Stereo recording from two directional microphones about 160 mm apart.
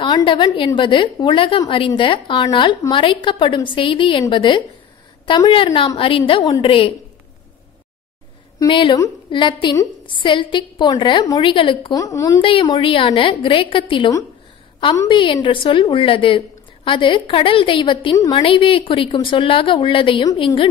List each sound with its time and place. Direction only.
0.0 s a woman's voice: 30° left (ahead or behind)
8.5 s a woman's voice: 30° left (ahead or behind)
12.4 s a woman's voice: 35° left (ahead or behind)
18.1 s a woman's voice: 20° left (ahead or behind)
18.4 s a woman's voice: 35° left (ahead or behind)